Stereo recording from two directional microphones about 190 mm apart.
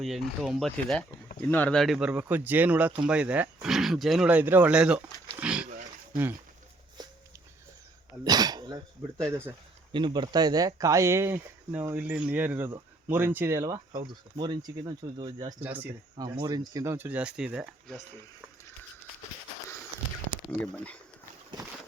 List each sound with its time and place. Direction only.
0.0 s speech: centre (ahead or behind)
5.4 s a sound: 5° right (ahead or behind)
8.2 s dog: 20° right (ahead or behind)
9.9 s speech: 25° right (ahead or behind)
15.6 s speech: 10° right (ahead or behind)
16.4 s speech: 20° right (ahead or behind); by 18.0 s centre (ahead or behind)
20.6 s speech: 5° left (ahead or behind)